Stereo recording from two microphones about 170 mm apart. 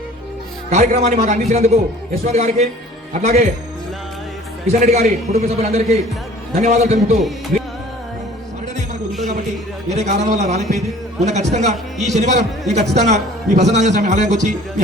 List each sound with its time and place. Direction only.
0.7 s a man's voice: 40° right (ahead or behind)
4.6 s a man's voice: 40° right (ahead or behind)
9.9 s a man's voice: 40° right (ahead or behind)